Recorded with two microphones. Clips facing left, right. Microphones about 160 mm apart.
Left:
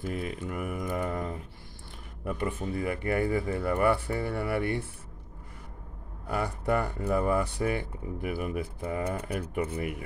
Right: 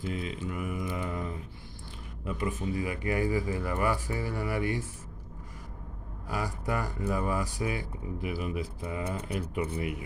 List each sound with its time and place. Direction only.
0.0 s mantra: 50° left (ahead or behind)
2.2 s speech: 55° left (ahead or behind)
6.2 s speech: 60° left (ahead or behind)
9.8 s mantra: 50° left (ahead or behind)